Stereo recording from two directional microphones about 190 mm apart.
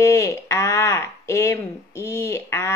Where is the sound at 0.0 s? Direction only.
15° left (ahead or behind).